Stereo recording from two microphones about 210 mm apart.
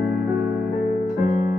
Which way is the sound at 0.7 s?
40° left (ahead or behind).